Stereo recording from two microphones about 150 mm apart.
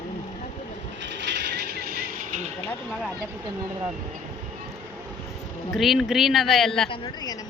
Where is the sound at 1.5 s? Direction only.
90° right.